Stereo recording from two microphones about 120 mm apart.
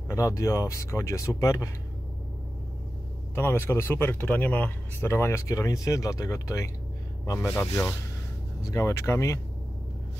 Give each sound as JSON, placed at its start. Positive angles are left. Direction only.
{"t": 0.1, "sound": "speech", "side_deg": 25}
{"t": 3.3, "sound": "speech", "side_deg": 20}